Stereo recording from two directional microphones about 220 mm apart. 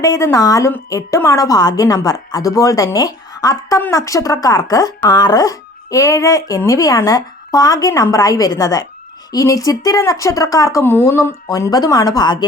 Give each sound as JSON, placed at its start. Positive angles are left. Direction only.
{"t": 0.0, "sound": "a woman's voice", "side_deg": 15}